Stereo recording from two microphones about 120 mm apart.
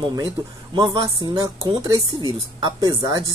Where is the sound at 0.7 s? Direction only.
35° right (ahead or behind).